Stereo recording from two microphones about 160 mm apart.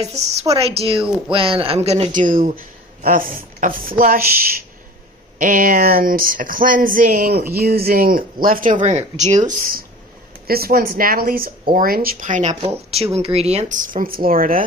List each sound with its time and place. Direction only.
0.0 s a woman's voice: 40° right (ahead or behind); by 8.7 s 60° right (ahead or behind)
8.8 s a man's voice: 45° right (ahead or behind); by 14.6 s 60° right (ahead or behind)